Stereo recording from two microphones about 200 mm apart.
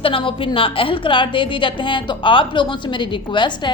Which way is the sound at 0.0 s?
25° left (ahead or behind).